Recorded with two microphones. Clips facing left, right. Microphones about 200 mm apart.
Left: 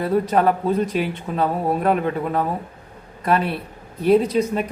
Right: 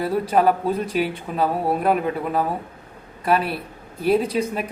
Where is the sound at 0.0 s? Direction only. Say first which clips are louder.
Left 1 dB; 5° right (ahead or behind).